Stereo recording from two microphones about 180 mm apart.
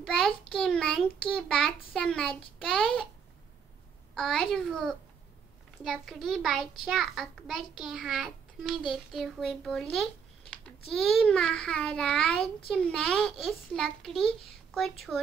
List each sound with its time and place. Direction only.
0.0 s a child's voice: centre (ahead or behind)
4.1 s a child's voice: centre (ahead or behind)